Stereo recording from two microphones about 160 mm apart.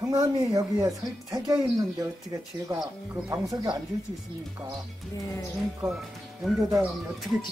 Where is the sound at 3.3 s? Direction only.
20° right (ahead or behind).